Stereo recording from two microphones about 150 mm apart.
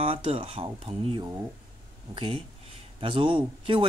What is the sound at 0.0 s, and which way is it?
Speech, 40° right (ahead or behind).